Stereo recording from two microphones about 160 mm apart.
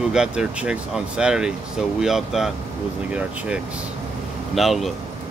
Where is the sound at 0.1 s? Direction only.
5° right (ahead or behind).